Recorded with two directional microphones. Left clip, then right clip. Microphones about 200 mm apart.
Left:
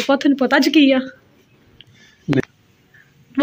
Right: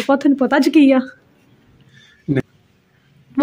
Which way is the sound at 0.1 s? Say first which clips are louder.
Right 1 dB; 20° right (ahead or behind).